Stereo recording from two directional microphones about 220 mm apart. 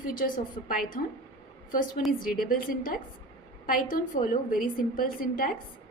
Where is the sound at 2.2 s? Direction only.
40° left (ahead or behind).